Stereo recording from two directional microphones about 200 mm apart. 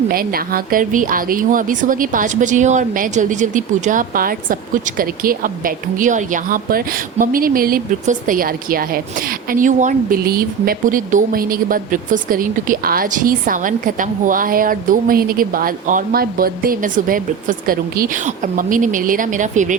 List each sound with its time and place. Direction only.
0.1 s speech: 45° right (ahead or behind)